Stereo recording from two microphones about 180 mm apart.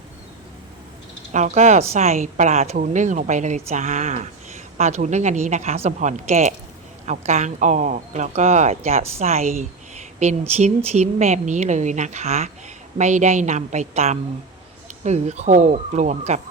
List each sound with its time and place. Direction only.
1.3 s a woman's voice: 40° right (ahead or behind)
10.8 s a woman's voice: 40° right (ahead or behind)